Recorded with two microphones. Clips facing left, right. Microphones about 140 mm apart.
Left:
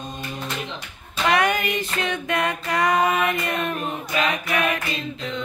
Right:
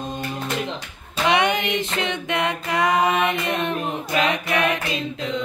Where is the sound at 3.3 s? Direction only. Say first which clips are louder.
Right 1 dB; 25° right (ahead or behind).